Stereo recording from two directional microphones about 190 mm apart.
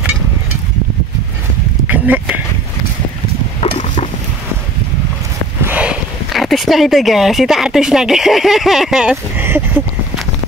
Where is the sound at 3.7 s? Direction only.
35° left (ahead or behind).